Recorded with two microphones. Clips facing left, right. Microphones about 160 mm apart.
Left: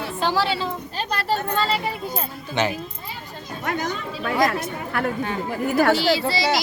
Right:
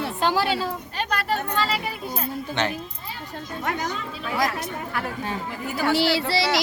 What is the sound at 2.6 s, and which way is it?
Speech, 5° left (ahead or behind).